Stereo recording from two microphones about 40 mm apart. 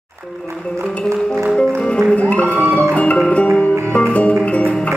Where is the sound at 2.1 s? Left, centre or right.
Left.